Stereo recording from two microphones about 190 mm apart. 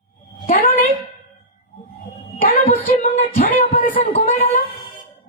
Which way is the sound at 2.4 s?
45° left (ahead or behind).